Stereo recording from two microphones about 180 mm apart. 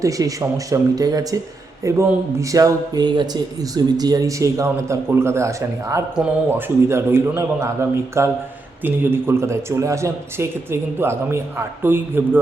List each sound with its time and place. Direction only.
0.0 s speech: 20° right (ahead or behind)